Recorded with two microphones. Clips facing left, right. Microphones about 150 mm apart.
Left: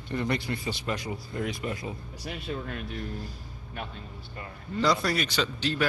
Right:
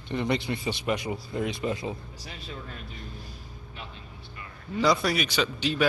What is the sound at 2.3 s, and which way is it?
Speech, 65° left (ahead or behind).